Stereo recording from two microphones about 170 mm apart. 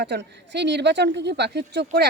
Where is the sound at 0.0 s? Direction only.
85° right.